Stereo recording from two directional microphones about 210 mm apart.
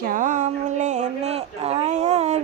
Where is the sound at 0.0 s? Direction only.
40° right (ahead or behind).